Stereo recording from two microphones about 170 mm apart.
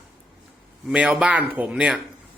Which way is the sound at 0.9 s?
5° right (ahead or behind).